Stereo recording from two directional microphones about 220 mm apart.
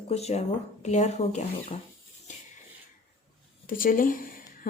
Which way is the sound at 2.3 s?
35° left (ahead or behind).